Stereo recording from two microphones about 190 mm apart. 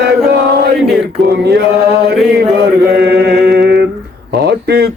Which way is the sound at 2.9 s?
60° right (ahead or behind).